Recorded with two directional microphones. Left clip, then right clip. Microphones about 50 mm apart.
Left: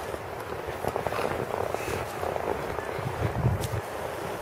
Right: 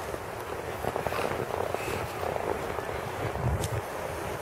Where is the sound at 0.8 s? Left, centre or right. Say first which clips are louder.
Left 1 dB; centre.